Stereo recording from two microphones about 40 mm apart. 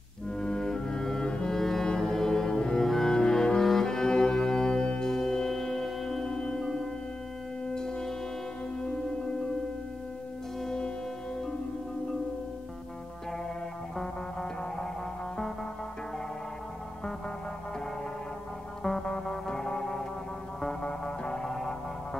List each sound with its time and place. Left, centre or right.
0.4 s music: centre
1.6 s music: centre
7.7 s music: centre
13.9 s music: centre
18.8 s music: centre
21.2 s music: centre